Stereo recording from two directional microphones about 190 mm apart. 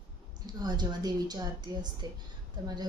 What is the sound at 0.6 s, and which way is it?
A woman's voice, 20° right (ahead or behind).